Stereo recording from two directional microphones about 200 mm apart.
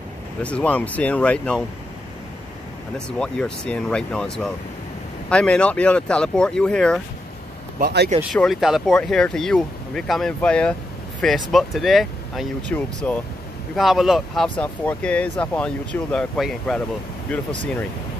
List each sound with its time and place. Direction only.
0.4 s speech: 5° left (ahead or behind)
3.1 s speech: 5° left (ahead or behind)
7.8 s speech: 55° right (ahead or behind)
8.2 s speech: centre (ahead or behind)